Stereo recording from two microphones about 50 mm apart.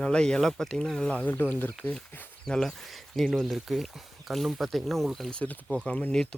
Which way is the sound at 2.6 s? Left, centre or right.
Centre.